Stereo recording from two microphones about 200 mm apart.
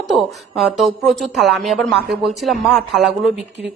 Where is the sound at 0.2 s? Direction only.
Centre (ahead or behind).